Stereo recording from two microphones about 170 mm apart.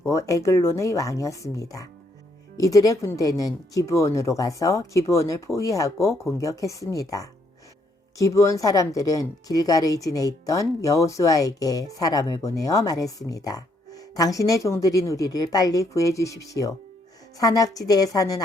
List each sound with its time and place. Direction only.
0.0 s a woman's voice: 15° left (ahead or behind)
8.2 s a woman's voice: 20° left (ahead or behind)